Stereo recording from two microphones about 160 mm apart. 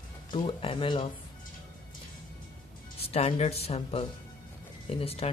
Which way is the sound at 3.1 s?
40° left (ahead or behind).